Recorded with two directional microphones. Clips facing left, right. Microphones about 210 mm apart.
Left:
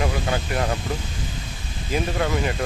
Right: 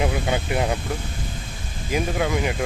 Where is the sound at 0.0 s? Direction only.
20° right (ahead or behind).